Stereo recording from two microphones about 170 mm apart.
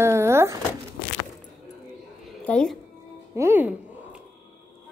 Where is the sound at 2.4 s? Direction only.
5° left (ahead or behind).